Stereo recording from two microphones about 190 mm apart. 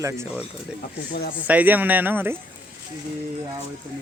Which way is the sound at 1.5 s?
10° right (ahead or behind).